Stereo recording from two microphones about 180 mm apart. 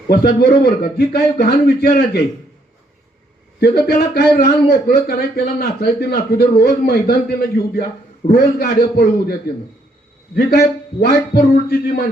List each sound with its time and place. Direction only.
0.1 s a man's voice: 60° left (ahead or behind)
3.8 s a man's voice: 60° left (ahead or behind)
10.3 s a man's voice: 60° left (ahead or behind)